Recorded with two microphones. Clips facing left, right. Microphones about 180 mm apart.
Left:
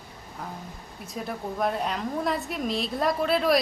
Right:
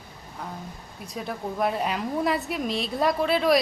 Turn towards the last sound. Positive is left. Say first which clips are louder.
# right 1 dB
turn(degrees=0)  # may be behind; listen again after turning